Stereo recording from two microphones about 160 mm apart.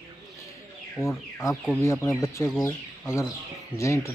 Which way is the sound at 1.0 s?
15° left (ahead or behind).